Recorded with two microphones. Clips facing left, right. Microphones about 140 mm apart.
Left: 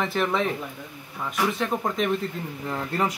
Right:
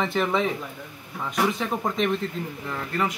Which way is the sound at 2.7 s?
30° left (ahead or behind).